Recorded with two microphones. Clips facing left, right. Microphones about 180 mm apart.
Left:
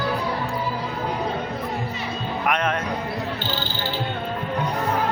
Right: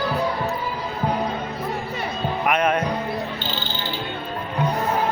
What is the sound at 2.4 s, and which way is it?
Music, 10° right (ahead or behind).